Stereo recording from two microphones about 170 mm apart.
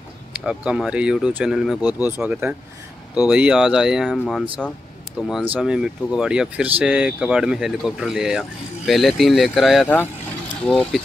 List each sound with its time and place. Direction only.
0.5 s speech: 5° right (ahead or behind)